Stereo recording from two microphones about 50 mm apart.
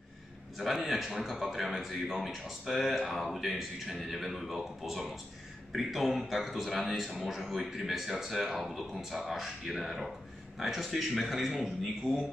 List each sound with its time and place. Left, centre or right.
0.6 s a man's voice: centre
12.1 s speech: centre